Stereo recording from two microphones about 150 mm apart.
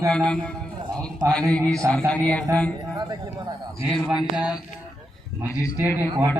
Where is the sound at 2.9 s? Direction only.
25° right (ahead or behind).